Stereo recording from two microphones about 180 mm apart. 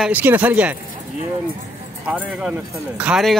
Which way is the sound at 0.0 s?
10° right (ahead or behind).